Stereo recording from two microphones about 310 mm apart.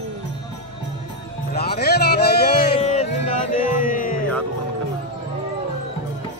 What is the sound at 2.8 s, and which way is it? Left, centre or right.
Music, left.